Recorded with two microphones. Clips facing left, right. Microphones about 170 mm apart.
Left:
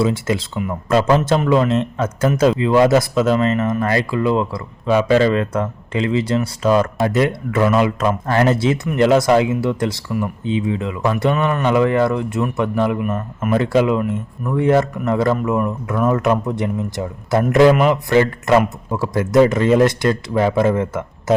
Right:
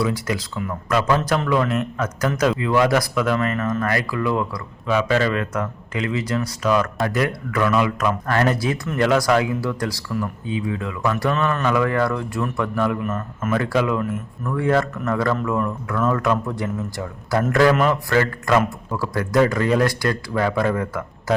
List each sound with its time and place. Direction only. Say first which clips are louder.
0.0 s speech: left 4 dB; 25° left (ahead or behind)